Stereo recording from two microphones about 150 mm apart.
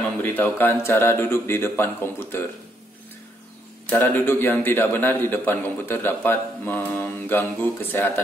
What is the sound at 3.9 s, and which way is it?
A man's voice, 15° left (ahead or behind).